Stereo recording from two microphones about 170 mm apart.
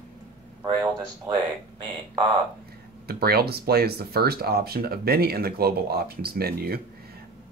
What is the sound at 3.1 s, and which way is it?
Speech, 65° right (ahead or behind).